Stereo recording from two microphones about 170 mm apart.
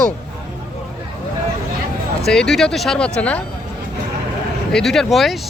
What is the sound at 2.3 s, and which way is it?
Speech, 5° left (ahead or behind).